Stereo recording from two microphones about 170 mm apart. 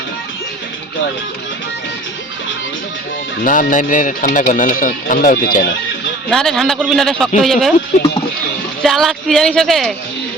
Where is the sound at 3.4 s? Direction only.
50° left (ahead or behind).